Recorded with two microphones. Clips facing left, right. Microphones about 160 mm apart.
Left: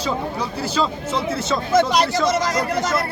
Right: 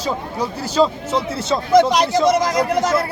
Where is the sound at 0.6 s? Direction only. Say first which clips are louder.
Right 6 dB; 40° right (ahead or behind).